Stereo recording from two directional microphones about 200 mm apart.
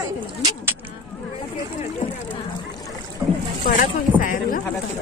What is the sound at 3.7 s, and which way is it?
Speech, 40° left (ahead or behind).